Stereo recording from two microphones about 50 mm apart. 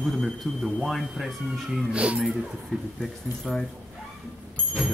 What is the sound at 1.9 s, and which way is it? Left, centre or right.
Speech, right.